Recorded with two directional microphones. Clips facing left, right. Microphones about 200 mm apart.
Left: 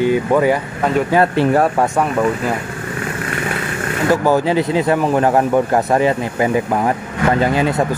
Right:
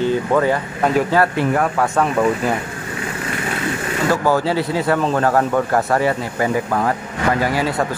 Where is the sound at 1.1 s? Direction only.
25° left (ahead or behind).